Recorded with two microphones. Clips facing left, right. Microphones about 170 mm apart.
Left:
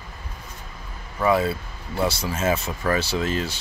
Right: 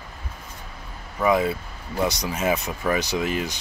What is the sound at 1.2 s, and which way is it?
Speech, 15° right (ahead or behind).